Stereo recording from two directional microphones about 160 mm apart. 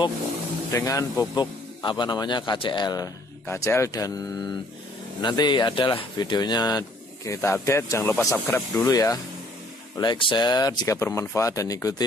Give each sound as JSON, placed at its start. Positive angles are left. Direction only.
{"t": 0.7, "sound": "speech", "side_deg": 20}